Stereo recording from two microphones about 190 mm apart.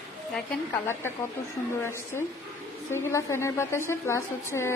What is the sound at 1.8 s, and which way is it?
A woman's voice, 15° left (ahead or behind).